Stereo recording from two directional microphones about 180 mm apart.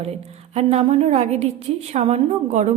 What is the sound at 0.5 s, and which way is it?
A woman's voice, 35° right (ahead or behind).